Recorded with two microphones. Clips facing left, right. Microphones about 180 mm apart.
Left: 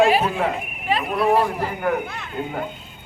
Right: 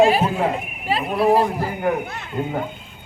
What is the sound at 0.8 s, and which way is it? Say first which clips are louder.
Speech: right 1 dB; 30° right (ahead or behind).